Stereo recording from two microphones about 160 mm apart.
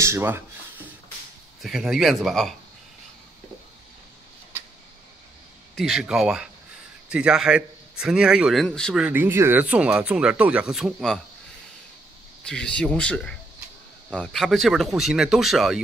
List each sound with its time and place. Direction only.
0.0 s speech: 15° right (ahead or behind)
1.6 s a man's voice: centre (ahead or behind)
5.8 s a man's voice: centre (ahead or behind)
9.0 s speech: 10° right (ahead or behind)
12.4 s a man's voice: 5° left (ahead or behind)